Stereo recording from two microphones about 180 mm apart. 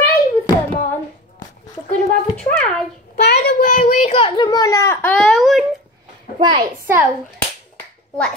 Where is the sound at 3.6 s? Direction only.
45° left (ahead or behind).